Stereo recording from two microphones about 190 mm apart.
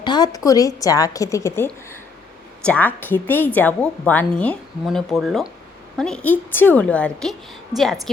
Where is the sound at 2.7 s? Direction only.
10° left (ahead or behind).